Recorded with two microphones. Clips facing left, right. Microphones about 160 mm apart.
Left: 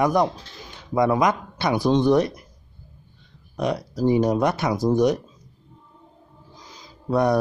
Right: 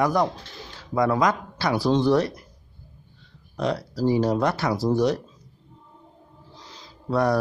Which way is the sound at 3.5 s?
20° left (ahead or behind).